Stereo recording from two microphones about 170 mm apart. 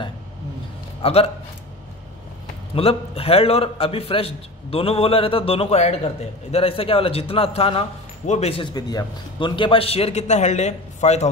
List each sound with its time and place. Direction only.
1.0 s a man's voice: 35° left (ahead or behind)
2.7 s a man's voice: 35° left (ahead or behind)